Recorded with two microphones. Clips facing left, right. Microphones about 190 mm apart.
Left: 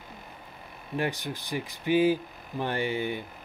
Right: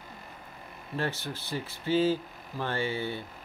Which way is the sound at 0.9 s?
15° left (ahead or behind).